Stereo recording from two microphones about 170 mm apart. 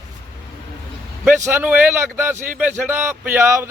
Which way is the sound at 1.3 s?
10° right (ahead or behind).